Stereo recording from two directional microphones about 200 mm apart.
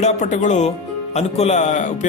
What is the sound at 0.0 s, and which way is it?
A man's voice, 40° left (ahead or behind).